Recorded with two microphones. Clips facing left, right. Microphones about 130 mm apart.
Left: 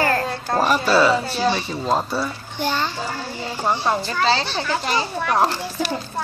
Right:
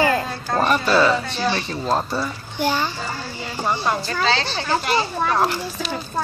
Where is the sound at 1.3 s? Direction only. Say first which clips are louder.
Left 2 dB; 10° left (ahead or behind).